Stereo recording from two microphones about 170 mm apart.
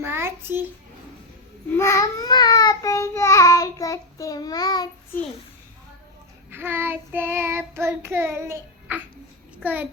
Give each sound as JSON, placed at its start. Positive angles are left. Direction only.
{"t": 0.0, "sound": "a child's voice", "side_deg": -15}
{"t": 1.7, "sound": "child singing", "side_deg": 15}
{"t": 6.5, "sound": "child singing", "side_deg": -10}